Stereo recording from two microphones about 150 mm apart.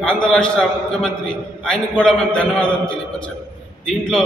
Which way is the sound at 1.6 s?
5° left (ahead or behind).